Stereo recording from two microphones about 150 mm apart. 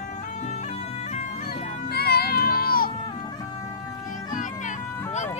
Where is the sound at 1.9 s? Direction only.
90° left.